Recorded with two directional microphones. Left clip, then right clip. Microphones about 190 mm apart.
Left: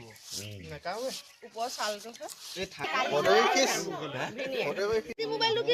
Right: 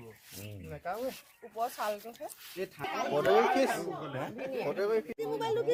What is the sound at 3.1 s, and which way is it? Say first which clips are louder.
Speech: left 2 dB; 5° right (ahead or behind).